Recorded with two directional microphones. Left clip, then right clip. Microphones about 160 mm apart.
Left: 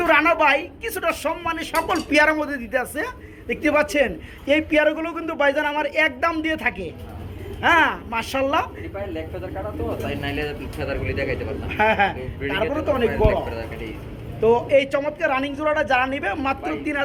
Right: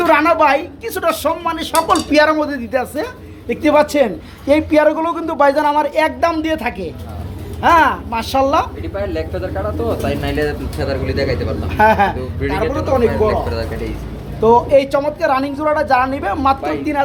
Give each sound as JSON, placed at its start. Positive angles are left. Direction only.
{"t": 0.0, "sound": "a woman's voice", "side_deg": -10}
{"t": 2.1, "sound": "a woman's voice", "side_deg": 0}
{"t": 9.0, "sound": "speech", "side_deg": -55}
{"t": 11.7, "sound": "a woman's voice", "side_deg": 0}
{"t": 12.7, "sound": "a man's voice", "side_deg": 15}
{"t": 13.1, "sound": "speech", "side_deg": -35}
{"t": 14.4, "sound": "a woman's voice", "side_deg": -5}